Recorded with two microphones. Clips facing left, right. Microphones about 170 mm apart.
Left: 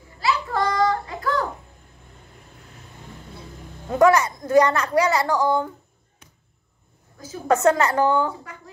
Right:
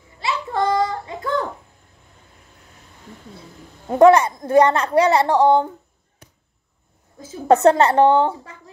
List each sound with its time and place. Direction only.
0.2 s child singing: 25° right (ahead or behind)
3.9 s a woman's voice: 30° right (ahead or behind)
7.2 s a woman's voice: 25° right (ahead or behind)